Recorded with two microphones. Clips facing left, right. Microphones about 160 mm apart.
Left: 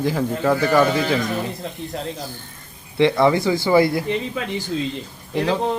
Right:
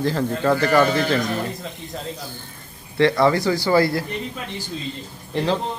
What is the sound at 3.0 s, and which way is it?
Speech, 20° left (ahead or behind).